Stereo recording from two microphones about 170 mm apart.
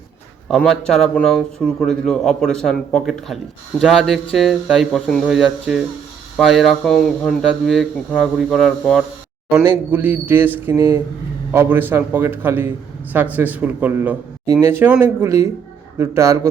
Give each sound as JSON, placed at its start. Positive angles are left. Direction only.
{"t": 0.5, "sound": "a man's voice", "side_deg": 5}